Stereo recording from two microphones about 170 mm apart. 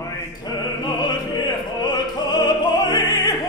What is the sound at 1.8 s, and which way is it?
Opera, 25° left (ahead or behind).